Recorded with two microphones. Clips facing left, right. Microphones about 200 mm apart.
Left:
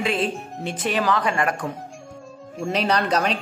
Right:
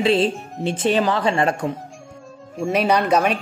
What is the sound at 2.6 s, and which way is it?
Speech, 10° right (ahead or behind).